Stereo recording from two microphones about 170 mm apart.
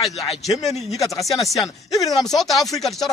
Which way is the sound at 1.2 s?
Centre (ahead or behind).